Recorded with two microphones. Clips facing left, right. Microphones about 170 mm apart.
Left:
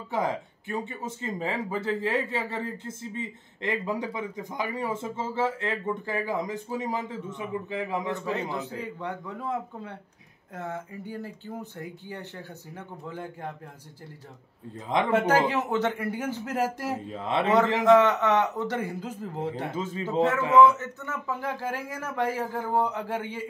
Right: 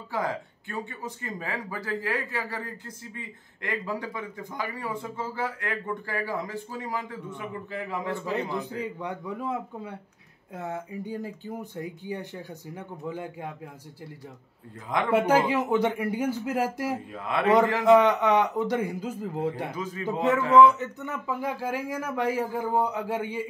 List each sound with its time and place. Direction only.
0.1 s speech: 20° left (ahead or behind)
8.5 s speech: 15° right (ahead or behind)
15.0 s speech: 10° right (ahead or behind)
17.1 s speech: 25° left (ahead or behind)
17.8 s speech: 15° right (ahead or behind)
19.7 s speech: 25° left (ahead or behind)
20.1 s speech: 15° right (ahead or behind)